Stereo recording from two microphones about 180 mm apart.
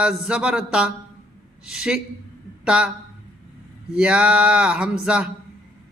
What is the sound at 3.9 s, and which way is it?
Mantra, 5° right (ahead or behind).